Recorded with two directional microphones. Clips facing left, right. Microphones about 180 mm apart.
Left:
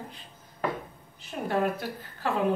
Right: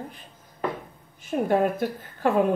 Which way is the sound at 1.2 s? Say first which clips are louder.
Right 6 dB; 50° right (ahead or behind).